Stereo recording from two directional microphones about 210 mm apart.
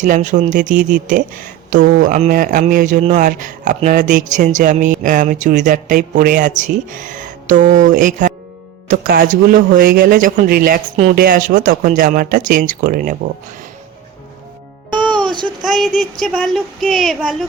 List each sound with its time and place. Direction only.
0.0 s speech: 35° right (ahead or behind)
0.8 s speech: 5° right (ahead or behind)
1.0 s speech: 40° right (ahead or behind)
14.9 s music: 5° left (ahead or behind)
15.2 s child singing: 20° right (ahead or behind)
15.6 s speech: centre (ahead or behind)